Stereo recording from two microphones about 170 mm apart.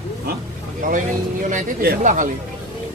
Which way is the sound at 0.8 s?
50° right (ahead or behind).